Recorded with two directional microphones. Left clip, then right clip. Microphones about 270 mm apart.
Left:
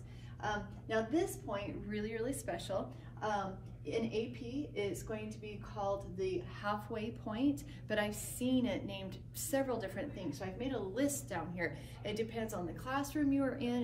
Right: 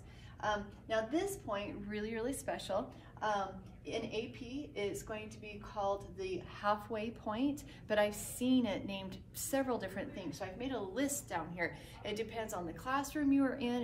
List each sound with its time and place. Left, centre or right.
0.4 s a woman's voice: centre